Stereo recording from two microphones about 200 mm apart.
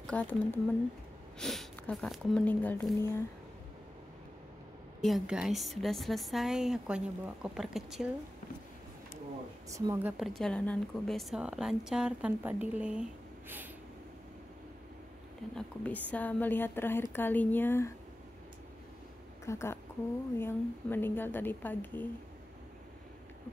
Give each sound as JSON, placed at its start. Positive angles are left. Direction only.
{"t": 0.0, "sound": "a woman's voice", "side_deg": 5}
{"t": 5.0, "sound": "a woman's voice", "side_deg": 0}
{"t": 9.7, "sound": "speech", "side_deg": -15}
{"t": 10.1, "sound": "a woman's voice", "side_deg": 0}
{"t": 15.5, "sound": "a woman's voice", "side_deg": 5}
{"t": 19.4, "sound": "a woman's voice", "side_deg": 15}